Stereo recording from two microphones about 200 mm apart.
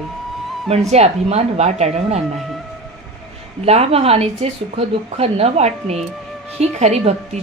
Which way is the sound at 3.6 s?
30° right (ahead or behind).